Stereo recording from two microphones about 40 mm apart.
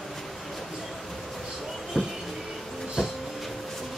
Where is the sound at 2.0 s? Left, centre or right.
Centre.